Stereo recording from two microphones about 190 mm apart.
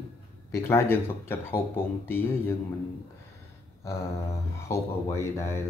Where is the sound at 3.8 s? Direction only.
15° left (ahead or behind).